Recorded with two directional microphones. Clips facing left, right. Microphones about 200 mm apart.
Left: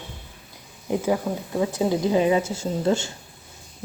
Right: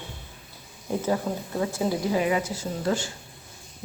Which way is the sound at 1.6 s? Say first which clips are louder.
Left 4 dB; 20° left (ahead or behind).